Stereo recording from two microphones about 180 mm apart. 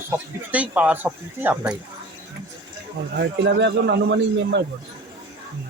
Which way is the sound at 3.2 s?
80° right.